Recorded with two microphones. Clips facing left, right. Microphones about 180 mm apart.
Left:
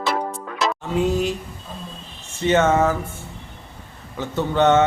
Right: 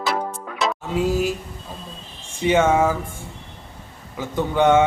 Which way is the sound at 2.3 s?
10° right (ahead or behind).